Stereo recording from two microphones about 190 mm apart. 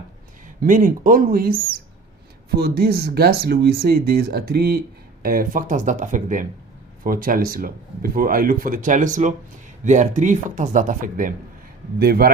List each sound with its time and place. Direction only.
0.4 s speech: 45° right (ahead or behind)
2.6 s speech: 55° right (ahead or behind)
11.9 s speech: 55° right (ahead or behind)